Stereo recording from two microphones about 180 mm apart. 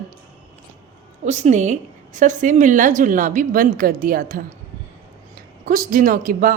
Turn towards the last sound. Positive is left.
turn(degrees=-50)  # may be behind; listen again after turning